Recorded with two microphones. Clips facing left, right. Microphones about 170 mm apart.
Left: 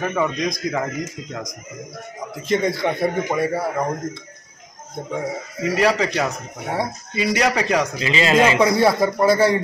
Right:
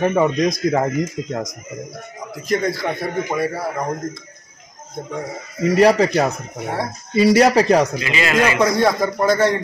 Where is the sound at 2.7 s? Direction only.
Centre (ahead or behind).